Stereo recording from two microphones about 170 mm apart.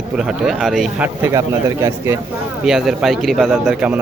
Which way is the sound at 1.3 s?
20° right (ahead or behind).